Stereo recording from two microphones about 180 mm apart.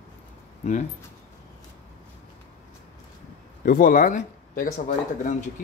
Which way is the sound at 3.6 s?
55° left (ahead or behind).